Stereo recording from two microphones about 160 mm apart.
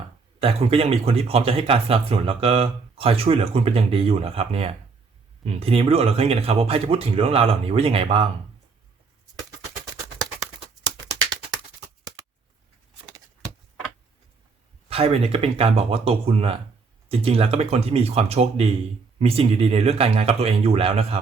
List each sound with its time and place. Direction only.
0.3 s speech: 35° right (ahead or behind)
14.8 s speech: 35° right (ahead or behind)